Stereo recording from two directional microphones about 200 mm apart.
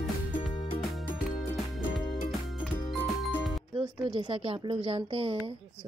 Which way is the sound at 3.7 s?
25° right (ahead or behind).